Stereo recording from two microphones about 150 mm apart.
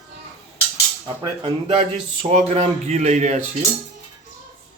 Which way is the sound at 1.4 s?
40° right (ahead or behind).